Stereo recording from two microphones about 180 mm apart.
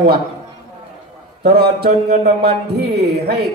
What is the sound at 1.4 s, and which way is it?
A man's voice, 60° right (ahead or behind).